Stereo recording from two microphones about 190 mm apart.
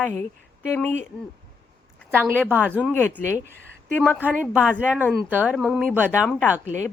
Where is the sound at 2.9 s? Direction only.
10° left (ahead or behind).